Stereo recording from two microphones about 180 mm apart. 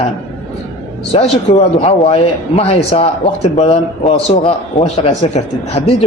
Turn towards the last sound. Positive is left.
turn(degrees=35)  # may be behind; listen again after turning